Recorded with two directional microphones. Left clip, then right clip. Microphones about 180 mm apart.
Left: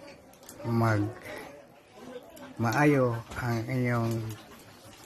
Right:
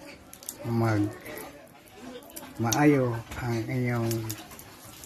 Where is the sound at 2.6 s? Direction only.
10° left (ahead or behind).